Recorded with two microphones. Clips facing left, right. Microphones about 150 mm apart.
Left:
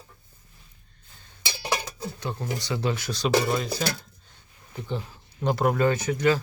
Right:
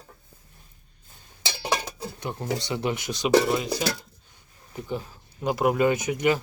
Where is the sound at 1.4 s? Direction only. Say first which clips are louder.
Right 1 dB; 15° right (ahead or behind).